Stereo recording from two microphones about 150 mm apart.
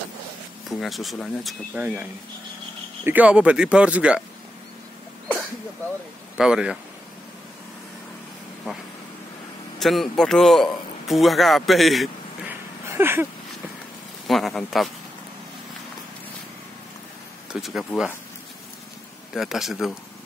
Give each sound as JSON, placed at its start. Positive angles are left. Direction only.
{"t": 0.7, "sound": "speech", "side_deg": 0}
{"t": 3.0, "sound": "speech", "side_deg": -10}
{"t": 6.3, "sound": "speech", "side_deg": -5}
{"t": 9.8, "sound": "speech", "side_deg": 0}
{"t": 12.4, "sound": "a sound", "side_deg": -15}
{"t": 14.2, "sound": "speech", "side_deg": 0}
{"t": 17.5, "sound": "speech", "side_deg": 0}
{"t": 19.3, "sound": "speech", "side_deg": 0}